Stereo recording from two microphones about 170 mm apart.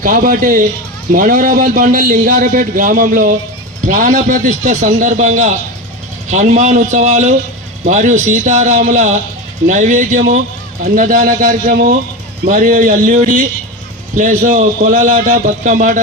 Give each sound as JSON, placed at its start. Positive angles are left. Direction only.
{"t": 0.0, "sound": "a man's voice", "side_deg": -55}